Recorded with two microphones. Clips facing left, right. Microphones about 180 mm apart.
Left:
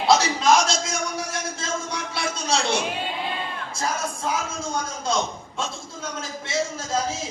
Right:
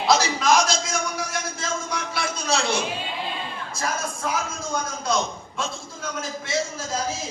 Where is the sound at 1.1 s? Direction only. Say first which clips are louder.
Even; 25° left (ahead or behind).